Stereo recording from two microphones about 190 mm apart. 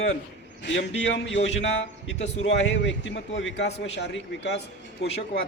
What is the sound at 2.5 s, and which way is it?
A man's voice, 70° left (ahead or behind).